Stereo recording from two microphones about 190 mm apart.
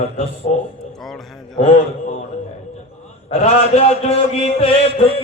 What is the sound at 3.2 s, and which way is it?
Speech, 30° left (ahead or behind).